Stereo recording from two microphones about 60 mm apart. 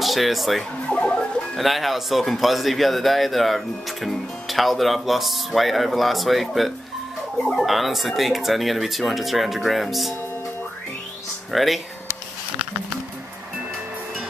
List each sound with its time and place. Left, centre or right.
0.0 s speech: centre
0.8 s music: centre
1.6 s speech: centre
11.5 s speech: centre